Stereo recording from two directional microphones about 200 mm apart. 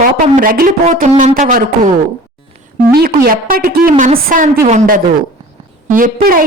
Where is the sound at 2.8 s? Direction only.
50° right (ahead or behind).